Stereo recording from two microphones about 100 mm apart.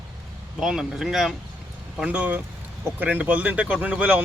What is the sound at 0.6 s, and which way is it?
Speech, 5° right (ahead or behind).